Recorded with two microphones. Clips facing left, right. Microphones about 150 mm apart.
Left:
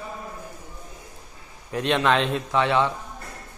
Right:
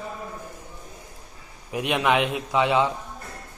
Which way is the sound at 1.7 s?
10° right (ahead or behind).